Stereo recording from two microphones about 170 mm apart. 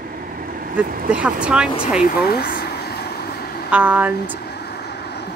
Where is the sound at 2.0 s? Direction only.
65° left (ahead or behind).